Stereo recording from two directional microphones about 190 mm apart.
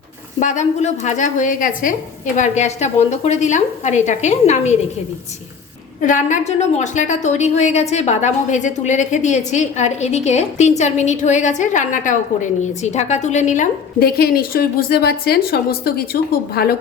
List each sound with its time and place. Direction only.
0.3 s a woman's voice: 40° left (ahead or behind)
6.0 s a woman's voice: 40° left (ahead or behind)